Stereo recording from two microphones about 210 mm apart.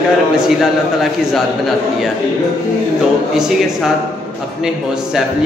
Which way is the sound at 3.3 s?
Centre (ahead or behind).